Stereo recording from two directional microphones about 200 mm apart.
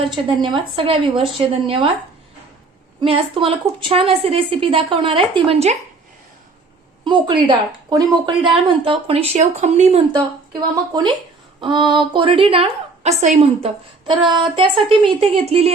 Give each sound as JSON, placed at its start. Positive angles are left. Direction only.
{"t": 0.3, "sound": "a woman's voice", "side_deg": -25}
{"t": 3.0, "sound": "a woman's voice", "side_deg": -25}
{"t": 7.0, "sound": "a woman's voice", "side_deg": -25}
{"t": 10.9, "sound": "a woman's voice", "side_deg": -20}
{"t": 14.1, "sound": "a woman's voice", "side_deg": -25}